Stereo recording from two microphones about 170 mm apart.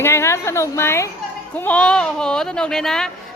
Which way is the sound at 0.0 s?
15° left (ahead or behind).